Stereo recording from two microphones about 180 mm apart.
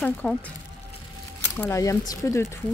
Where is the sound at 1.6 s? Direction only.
15° left (ahead or behind).